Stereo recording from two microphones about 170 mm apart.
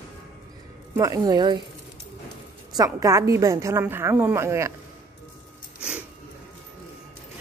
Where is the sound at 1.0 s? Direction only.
20° right (ahead or behind).